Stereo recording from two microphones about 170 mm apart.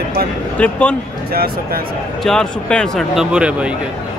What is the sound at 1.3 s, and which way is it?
Speech, 60° right (ahead or behind).